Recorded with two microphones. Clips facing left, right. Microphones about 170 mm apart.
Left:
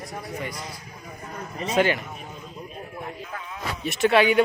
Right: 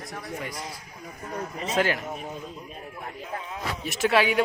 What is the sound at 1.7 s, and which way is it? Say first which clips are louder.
Speech: left 3 dB; centre (ahead or behind).